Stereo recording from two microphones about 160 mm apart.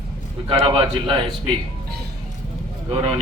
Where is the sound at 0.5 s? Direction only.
30° right (ahead or behind).